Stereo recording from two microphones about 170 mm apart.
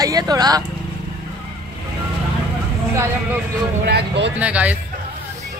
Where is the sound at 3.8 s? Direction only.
80° right.